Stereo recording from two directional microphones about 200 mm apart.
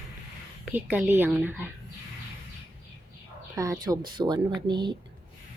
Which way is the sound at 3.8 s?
20° right (ahead or behind).